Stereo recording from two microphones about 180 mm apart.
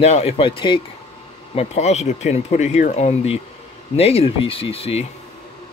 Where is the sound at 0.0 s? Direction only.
35° left (ahead or behind).